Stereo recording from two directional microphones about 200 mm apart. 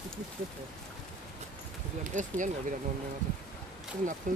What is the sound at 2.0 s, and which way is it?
Speech, 40° right (ahead or behind).